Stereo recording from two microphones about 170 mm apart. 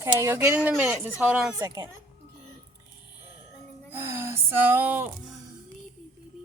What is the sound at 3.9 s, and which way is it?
Music, 15° right (ahead or behind).